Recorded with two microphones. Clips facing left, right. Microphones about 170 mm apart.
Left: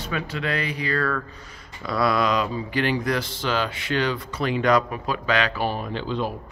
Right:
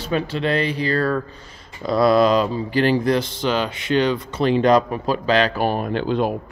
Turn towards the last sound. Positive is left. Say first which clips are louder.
# right 6 dB
turn(degrees=-55)  # may be behind; listen again after turning